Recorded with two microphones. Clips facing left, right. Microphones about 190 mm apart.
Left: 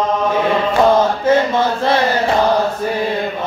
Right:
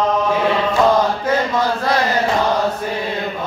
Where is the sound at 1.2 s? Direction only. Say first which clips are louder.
Left 4 dB; 25° left (ahead or behind).